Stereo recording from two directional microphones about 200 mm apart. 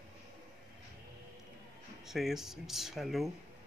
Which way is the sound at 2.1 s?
Centre (ahead or behind).